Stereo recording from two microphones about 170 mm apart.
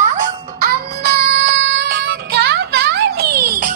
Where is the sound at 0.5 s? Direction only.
65° right (ahead or behind).